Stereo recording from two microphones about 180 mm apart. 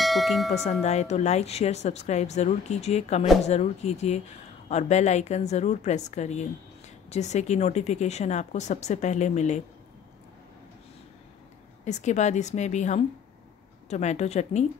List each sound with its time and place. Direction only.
0.0 s tubular bells: centre (ahead or behind)
0.5 s speech: 40° left (ahead or behind)
11.8 s speech: 40° left (ahead or behind)